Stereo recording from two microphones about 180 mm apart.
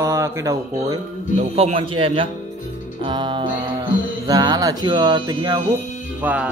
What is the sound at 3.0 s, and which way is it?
Music, 25° right (ahead or behind).